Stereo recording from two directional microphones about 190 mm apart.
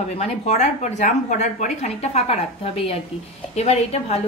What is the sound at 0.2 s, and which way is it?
A woman's voice, 40° left (ahead or behind).